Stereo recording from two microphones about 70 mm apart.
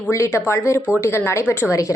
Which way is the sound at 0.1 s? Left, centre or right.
Left.